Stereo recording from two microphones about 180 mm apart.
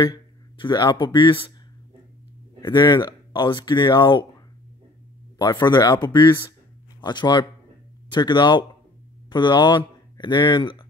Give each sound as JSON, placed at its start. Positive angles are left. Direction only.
{"t": 0.0, "sound": "speech", "side_deg": 25}
{"t": 2.6, "sound": "speech", "side_deg": 25}
{"t": 5.4, "sound": "speech", "side_deg": 25}